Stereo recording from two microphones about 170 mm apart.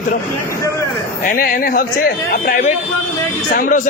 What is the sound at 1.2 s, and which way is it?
A man's voice, 55° left (ahead or behind).